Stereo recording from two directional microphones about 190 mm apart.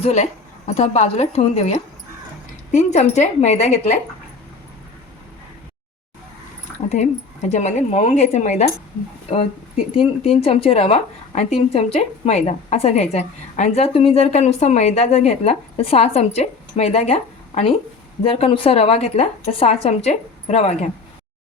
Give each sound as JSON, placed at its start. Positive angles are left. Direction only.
{"t": 0.0, "sound": "speech", "side_deg": 35}
{"t": 6.7, "sound": "speech", "side_deg": 35}
{"t": 10.2, "sound": "speech", "side_deg": 30}